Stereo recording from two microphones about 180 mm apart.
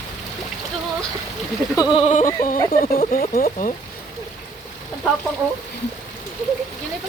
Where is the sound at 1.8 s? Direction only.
25° left (ahead or behind).